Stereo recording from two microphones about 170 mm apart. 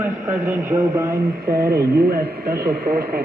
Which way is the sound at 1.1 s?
65° right (ahead or behind).